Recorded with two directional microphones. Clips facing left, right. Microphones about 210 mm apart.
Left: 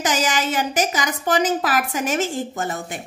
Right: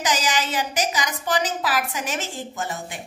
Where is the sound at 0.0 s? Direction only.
50° left (ahead or behind).